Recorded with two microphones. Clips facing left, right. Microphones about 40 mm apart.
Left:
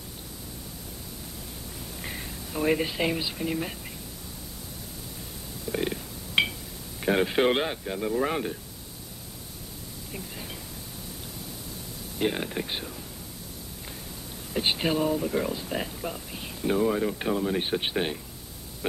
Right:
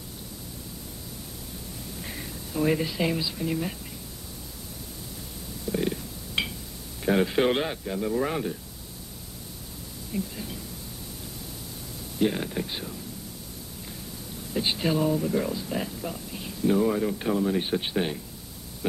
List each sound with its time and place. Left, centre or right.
2.0 s a sound: centre
3.3 s speech: centre
5.8 s burping: centre
6.4 s a sound: left
7.0 s speech: centre
10.1 s speech: centre
12.3 s speech: centre
14.6 s speech: left
15.0 s speech: centre